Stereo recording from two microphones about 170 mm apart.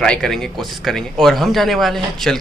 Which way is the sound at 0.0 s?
5° left (ahead or behind).